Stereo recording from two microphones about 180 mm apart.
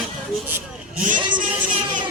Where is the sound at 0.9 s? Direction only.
45° right (ahead or behind).